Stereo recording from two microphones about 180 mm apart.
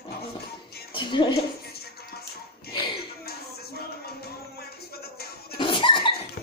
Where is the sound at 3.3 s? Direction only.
60° left (ahead or behind).